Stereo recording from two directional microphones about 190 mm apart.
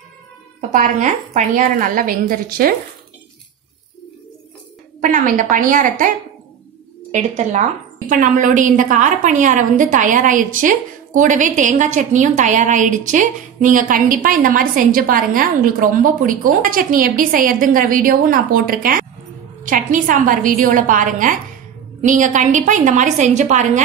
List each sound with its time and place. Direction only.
0.6 s a woman's voice: 45° right (ahead or behind)
5.0 s a woman's voice: 45° right (ahead or behind)